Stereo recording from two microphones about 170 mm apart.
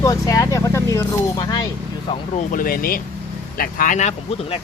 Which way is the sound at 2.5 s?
55° left (ahead or behind).